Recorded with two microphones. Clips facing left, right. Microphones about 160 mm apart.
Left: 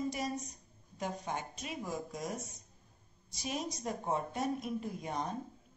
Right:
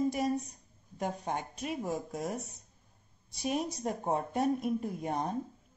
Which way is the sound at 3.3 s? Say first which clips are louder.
Right 6 dB; 55° right (ahead or behind).